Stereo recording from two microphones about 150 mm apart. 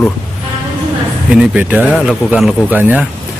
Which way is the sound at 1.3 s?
5° right (ahead or behind).